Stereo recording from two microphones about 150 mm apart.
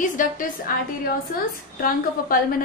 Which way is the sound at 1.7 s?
70° left (ahead or behind).